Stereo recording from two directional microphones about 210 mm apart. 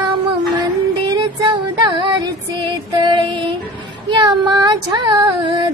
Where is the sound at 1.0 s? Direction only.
20° right (ahead or behind).